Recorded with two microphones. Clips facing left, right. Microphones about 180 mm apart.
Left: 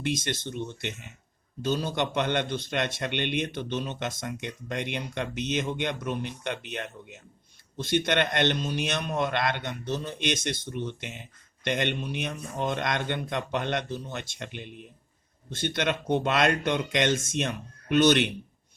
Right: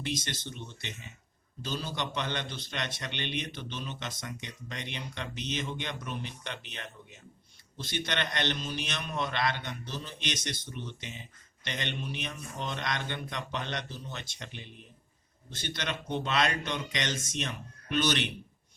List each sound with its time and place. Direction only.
0.4 s a man's voice: 55° left (ahead or behind)